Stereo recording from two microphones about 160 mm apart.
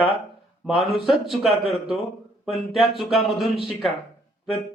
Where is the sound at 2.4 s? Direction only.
Centre (ahead or behind).